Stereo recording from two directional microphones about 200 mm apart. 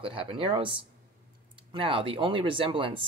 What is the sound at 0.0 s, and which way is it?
Speech, 25° right (ahead or behind).